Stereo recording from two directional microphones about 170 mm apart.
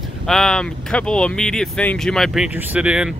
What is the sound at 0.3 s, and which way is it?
Speech, 5° left (ahead or behind).